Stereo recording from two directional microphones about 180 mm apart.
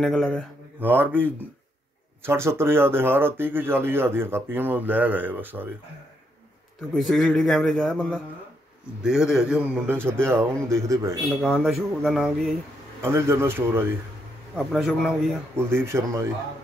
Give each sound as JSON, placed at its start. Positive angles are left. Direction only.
{"t": 0.0, "sound": "a man's voice", "side_deg": 5}
{"t": 0.7, "sound": "speech", "side_deg": -10}
{"t": 7.0, "sound": "a man's voice", "side_deg": 0}
{"t": 10.2, "sound": "speech", "side_deg": -15}
{"t": 11.4, "sound": "a man's voice", "side_deg": 0}
{"t": 13.0, "sound": "speech", "side_deg": -15}
{"t": 14.6, "sound": "a man's voice", "side_deg": 0}
{"t": 15.5, "sound": "speech", "side_deg": -15}